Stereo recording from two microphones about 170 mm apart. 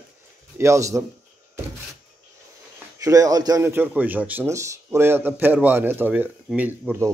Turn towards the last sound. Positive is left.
turn(degrees=-15)  # may be behind; listen again after turning